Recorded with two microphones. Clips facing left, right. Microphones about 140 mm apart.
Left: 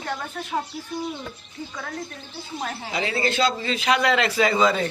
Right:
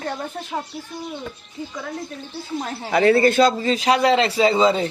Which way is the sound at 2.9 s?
55° right (ahead or behind).